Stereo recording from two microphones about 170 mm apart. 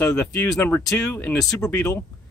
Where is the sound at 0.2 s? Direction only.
10° left (ahead or behind).